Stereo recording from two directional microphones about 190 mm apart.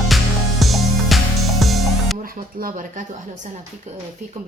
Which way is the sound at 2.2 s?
45° right (ahead or behind).